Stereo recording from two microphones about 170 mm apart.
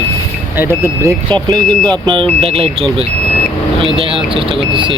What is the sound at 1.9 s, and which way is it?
Speech, 30° right (ahead or behind).